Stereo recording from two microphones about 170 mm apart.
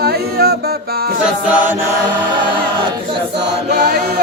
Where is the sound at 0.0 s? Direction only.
65° right (ahead or behind).